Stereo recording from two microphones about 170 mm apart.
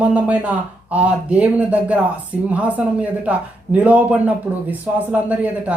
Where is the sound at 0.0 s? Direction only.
10° right (ahead or behind).